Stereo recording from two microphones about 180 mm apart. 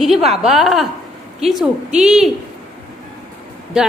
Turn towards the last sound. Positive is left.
turn(degrees=-5)  # may be behind; listen again after turning